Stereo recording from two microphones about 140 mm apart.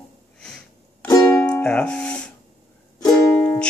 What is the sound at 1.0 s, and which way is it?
Music, 15° left (ahead or behind).